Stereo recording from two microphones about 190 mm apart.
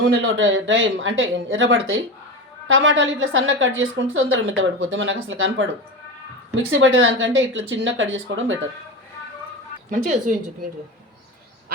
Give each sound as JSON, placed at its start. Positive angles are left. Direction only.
{"t": 0.0, "sound": "a woman's voice", "side_deg": -75}
{"t": 10.3, "sound": "a woman's voice", "side_deg": -40}